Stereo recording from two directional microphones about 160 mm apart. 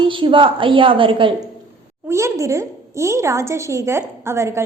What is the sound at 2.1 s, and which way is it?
A woman's voice, 20° right (ahead or behind).